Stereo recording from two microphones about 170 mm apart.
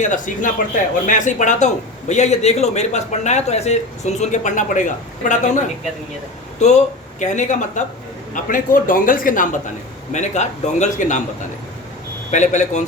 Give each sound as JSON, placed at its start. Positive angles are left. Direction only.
{"t": 0.0, "sound": "a man's voice", "side_deg": 45}
{"t": 12.3, "sound": "speech", "side_deg": 45}